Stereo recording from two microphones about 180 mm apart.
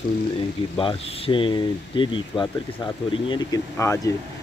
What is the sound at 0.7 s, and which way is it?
Speech, 30° left (ahead or behind).